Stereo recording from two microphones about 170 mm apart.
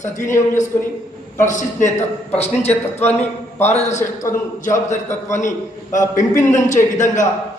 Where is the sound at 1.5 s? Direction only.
45° left (ahead or behind).